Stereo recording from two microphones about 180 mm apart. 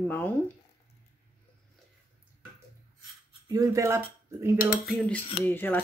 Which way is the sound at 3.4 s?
15° right (ahead or behind).